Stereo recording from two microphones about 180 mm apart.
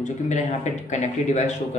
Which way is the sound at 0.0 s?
40° left (ahead or behind).